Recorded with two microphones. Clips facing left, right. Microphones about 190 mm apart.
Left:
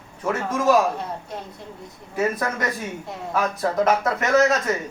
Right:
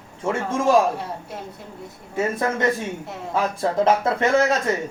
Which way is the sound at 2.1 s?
25° right (ahead or behind).